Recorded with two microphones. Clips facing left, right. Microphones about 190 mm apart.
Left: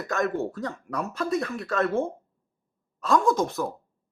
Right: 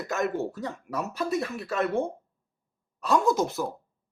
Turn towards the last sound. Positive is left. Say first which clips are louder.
# left 1 dB
turn(degrees=-5)  # may be behind; listen again after turning